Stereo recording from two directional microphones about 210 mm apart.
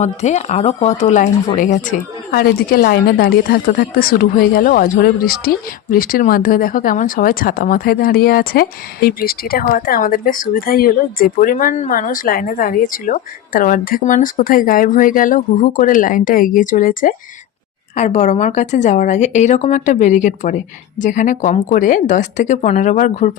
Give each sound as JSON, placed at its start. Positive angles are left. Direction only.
{"t": 0.0, "sound": "speech", "side_deg": 35}